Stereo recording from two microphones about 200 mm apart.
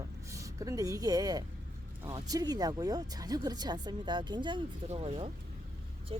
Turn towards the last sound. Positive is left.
turn(degrees=-25)  # may be behind; listen again after turning